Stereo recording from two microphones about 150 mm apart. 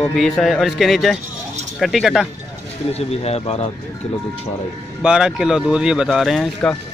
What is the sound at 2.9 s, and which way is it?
Speech, 45° left (ahead or behind).